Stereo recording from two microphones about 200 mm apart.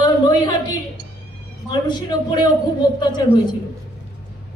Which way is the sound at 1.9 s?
20° left (ahead or behind).